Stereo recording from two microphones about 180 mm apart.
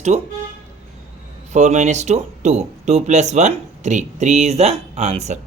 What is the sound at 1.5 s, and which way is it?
Speech, 40° right (ahead or behind).